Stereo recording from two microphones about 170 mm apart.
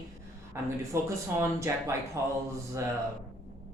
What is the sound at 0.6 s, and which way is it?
Speech, 15° right (ahead or behind).